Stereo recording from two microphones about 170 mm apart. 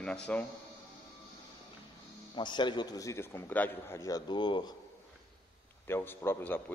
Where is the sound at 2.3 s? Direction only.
25° left (ahead or behind).